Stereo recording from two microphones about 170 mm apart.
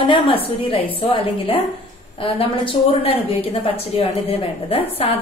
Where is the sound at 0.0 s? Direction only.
30° left (ahead or behind).